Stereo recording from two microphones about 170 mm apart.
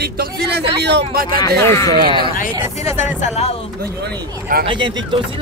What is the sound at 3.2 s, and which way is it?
Speech, 40° left (ahead or behind).